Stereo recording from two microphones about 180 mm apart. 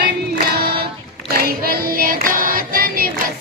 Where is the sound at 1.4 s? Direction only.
55° right (ahead or behind).